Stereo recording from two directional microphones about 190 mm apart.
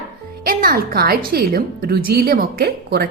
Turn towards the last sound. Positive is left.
turn(degrees=-55)  # may be behind; listen again after turning